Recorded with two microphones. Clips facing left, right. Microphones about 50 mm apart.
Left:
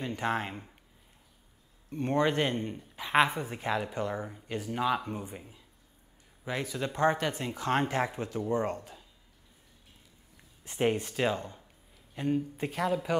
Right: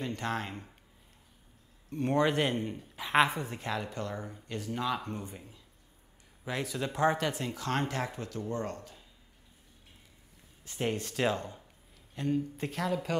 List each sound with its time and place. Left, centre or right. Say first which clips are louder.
0.0 s speech: left 3 dB; centre
1.9 s speech: even; centre
6.4 s speech: left 1 dB; centre; by 9.0 s left
10.6 s speech: left 5 dB; left